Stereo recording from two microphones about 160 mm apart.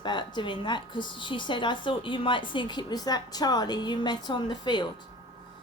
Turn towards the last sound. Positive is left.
turn(degrees=30)  # may be behind; listen again after turning